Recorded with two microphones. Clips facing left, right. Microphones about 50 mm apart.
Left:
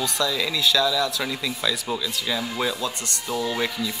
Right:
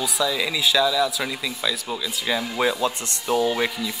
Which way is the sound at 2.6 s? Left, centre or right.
Right.